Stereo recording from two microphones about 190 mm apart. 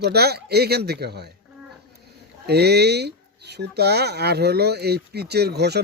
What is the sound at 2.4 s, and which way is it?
Speech, 60° right (ahead or behind).